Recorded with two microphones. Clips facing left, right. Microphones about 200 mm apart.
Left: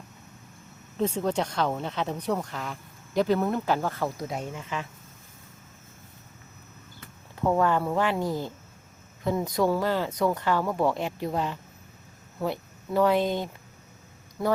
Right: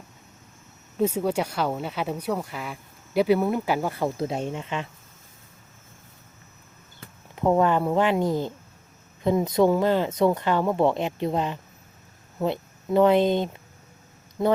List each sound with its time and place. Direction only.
0.9 s speech: 10° right (ahead or behind)
4.2 s speech: 25° right (ahead or behind)
7.0 s speech: 20° right (ahead or behind)